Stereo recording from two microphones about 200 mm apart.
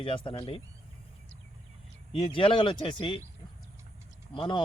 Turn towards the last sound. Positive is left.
turn(degrees=25)  # may be behind; listen again after turning